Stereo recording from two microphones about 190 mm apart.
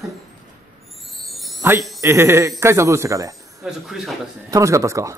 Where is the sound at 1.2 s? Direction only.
Centre (ahead or behind).